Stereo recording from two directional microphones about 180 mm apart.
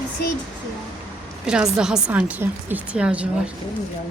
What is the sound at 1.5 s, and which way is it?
A woman's voice, 5° right (ahead or behind).